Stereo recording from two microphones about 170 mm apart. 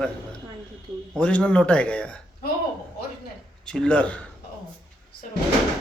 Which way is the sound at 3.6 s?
5° left (ahead or behind).